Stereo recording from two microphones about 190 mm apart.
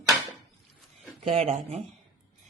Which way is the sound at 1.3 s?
30° right (ahead or behind).